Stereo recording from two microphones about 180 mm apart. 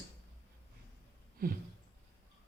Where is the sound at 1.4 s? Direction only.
55° right (ahead or behind).